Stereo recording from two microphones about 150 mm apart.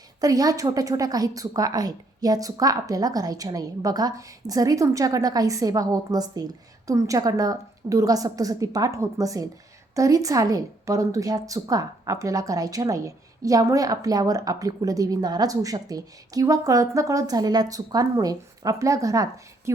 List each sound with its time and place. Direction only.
0.2 s a woman's voice: 25° right (ahead or behind)